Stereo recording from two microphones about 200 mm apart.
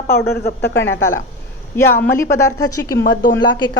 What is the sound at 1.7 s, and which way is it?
A woman's voice, 10° left (ahead or behind).